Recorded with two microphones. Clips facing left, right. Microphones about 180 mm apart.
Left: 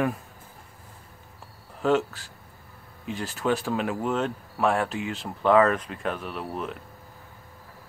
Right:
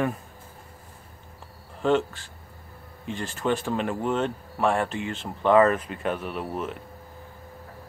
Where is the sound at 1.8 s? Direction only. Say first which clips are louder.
Even; 5° left (ahead or behind).